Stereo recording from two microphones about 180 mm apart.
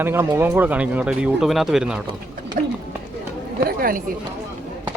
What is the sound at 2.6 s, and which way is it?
Speech, 50° right (ahead or behind).